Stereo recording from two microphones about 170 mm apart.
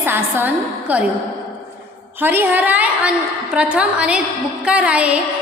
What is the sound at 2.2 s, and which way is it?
A woman's voice, 10° right (ahead or behind).